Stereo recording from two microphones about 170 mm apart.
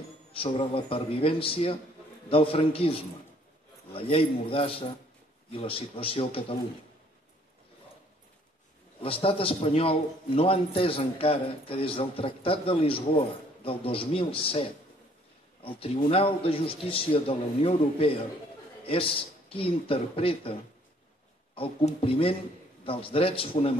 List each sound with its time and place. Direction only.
0.3 s a man's voice: 30° left (ahead or behind)
9.0 s a man's voice: 35° left (ahead or behind)
21.5 s a man's voice: 35° left (ahead or behind)